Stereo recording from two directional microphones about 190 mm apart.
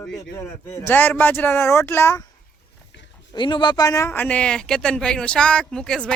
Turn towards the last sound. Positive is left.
turn(degrees=5)  # may be behind; listen again after turning